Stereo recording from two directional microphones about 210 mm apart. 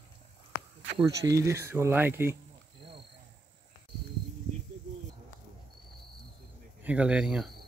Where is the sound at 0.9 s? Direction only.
15° right (ahead or behind).